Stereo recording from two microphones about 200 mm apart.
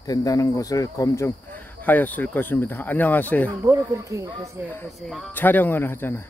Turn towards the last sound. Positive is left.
turn(degrees=10)  # may be behind; listen again after turning